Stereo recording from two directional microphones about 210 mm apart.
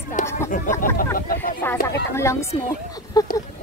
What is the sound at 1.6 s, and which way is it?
Speech, 10° left (ahead or behind).